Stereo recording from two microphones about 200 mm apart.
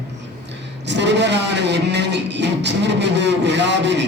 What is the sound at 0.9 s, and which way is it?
Speech, 60° right (ahead or behind).